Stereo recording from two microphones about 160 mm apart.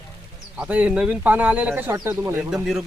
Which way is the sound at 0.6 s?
10° right (ahead or behind).